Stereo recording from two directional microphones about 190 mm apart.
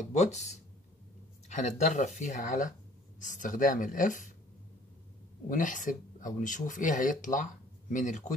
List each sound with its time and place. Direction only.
0.0 s speech: 35° left (ahead or behind)
5.5 s speech: 45° left (ahead or behind)